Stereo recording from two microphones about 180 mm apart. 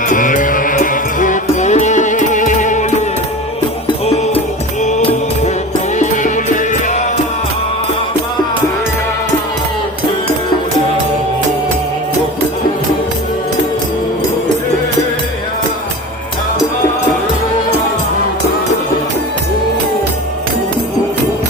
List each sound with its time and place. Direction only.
0.1 s music: 45° left (ahead or behind)
4.0 s music: 35° left (ahead or behind)